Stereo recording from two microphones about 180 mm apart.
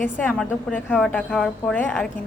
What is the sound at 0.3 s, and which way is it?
Speech, 5° left (ahead or behind).